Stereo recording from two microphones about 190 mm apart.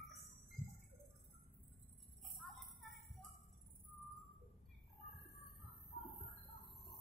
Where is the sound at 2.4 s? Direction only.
Centre (ahead or behind).